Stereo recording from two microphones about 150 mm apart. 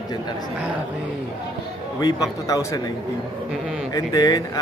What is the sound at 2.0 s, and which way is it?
Speech, 25° left (ahead or behind).